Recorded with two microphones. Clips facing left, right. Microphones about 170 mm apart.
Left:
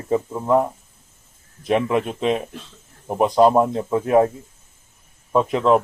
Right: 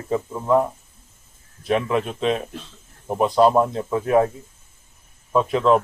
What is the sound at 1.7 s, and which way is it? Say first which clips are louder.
Speech: left 2 dB; 15° left (ahead or behind).